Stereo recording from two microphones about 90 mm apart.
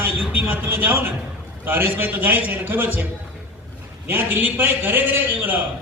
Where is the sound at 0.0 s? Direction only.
20° right (ahead or behind).